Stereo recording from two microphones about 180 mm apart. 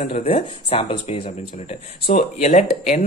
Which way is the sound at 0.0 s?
35° left (ahead or behind).